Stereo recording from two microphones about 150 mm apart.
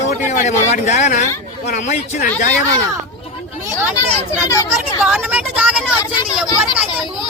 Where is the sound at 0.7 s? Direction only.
50° left (ahead or behind).